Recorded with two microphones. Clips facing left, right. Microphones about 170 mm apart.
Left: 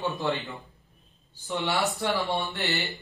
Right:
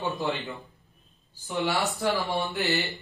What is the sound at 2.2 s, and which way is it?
Mantra, centre (ahead or behind).